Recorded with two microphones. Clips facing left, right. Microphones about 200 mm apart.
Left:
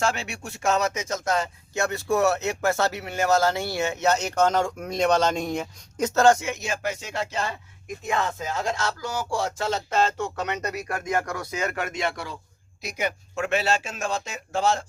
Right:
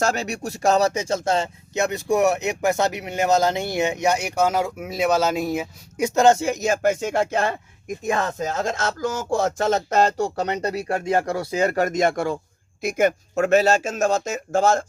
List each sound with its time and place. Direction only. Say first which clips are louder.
0.0 s speech: right 4 dB; 40° right (ahead or behind); by 6.4 s 20° right (ahead or behind)
6.4 s a man's voice: right 8 dB; 40° right (ahead or behind)
8.0 s a man's voice: right 3 dB; 40° right (ahead or behind)